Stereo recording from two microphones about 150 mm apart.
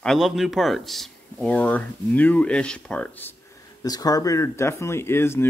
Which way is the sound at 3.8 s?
25° left (ahead or behind).